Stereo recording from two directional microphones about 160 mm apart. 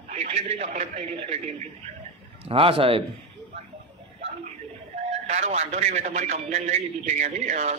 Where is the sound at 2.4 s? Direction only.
35° right (ahead or behind).